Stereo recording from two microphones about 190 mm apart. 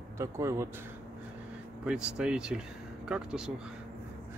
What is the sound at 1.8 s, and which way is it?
Speech, 5° right (ahead or behind).